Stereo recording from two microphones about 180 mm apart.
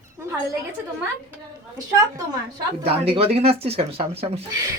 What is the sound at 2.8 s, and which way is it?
Speech, 35° right (ahead or behind).